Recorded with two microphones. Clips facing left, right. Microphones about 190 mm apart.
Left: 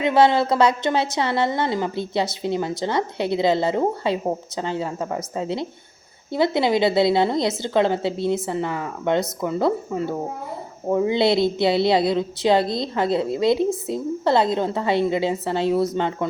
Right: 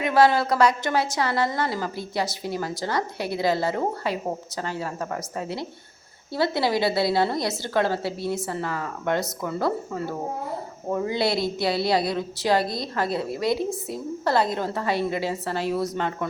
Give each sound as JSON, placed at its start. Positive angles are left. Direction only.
{"t": 0.0, "sound": "a woman's voice", "side_deg": 25}